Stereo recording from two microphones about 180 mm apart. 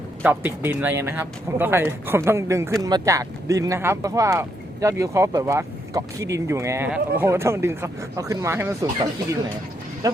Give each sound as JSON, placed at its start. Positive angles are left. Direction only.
{"t": 0.2, "sound": "speech", "side_deg": -10}